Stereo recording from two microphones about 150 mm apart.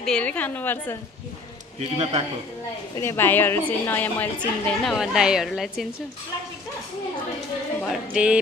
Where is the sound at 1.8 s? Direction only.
45° right (ahead or behind).